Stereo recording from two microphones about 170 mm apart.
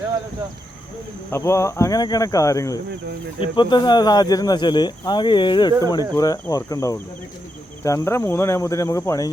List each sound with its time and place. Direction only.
1.3 s speech: 15° left (ahead or behind)